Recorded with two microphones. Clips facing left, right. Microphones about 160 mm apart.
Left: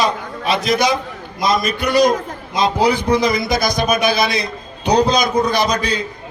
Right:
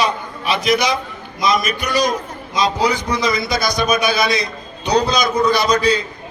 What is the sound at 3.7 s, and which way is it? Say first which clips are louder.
Speech: right 1 dB; 55° left (ahead or behind).